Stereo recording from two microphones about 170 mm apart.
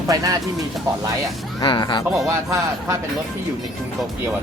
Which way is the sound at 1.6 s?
30° left (ahead or behind).